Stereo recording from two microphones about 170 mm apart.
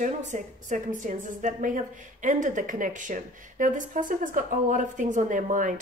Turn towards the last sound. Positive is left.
turn(degrees=-50)  # may be behind; listen again after turning